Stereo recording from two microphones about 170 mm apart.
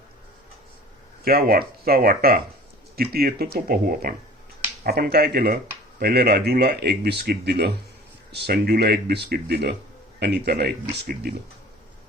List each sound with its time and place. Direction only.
1.2 s speech: 65° right (ahead or behind)